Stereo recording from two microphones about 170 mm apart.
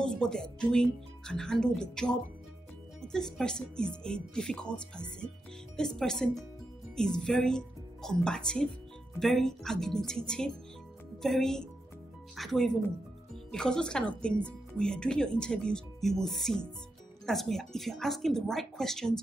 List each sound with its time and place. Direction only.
0.0 s speech: 5° left (ahead or behind)